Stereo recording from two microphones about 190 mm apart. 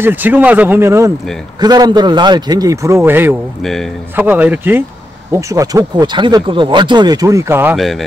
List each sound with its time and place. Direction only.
0.0 s speech: 10° right (ahead or behind)
3.6 s speech: centre (ahead or behind)
4.1 s speech: 10° right (ahead or behind)
7.7 s speech: centre (ahead or behind)